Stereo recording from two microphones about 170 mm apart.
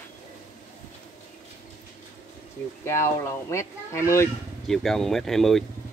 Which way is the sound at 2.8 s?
15° left (ahead or behind).